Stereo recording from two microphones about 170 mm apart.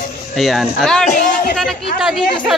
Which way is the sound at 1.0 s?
55° left (ahead or behind).